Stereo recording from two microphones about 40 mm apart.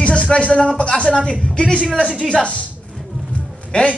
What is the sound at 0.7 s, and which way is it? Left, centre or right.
Speech, left.